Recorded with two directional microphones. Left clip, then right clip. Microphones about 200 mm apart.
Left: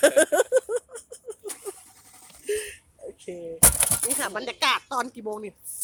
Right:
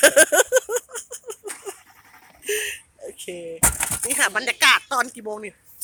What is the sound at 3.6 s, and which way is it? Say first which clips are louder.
Chop: even; 50° left (ahead or behind).